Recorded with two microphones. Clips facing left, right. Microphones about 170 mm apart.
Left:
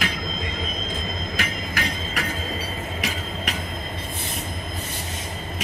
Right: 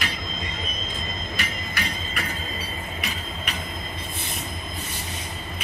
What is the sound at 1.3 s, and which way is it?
Train, 90° left.